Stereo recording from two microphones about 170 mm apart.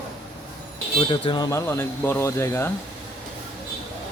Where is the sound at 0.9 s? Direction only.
30° left (ahead or behind); by 2.6 s 15° left (ahead or behind).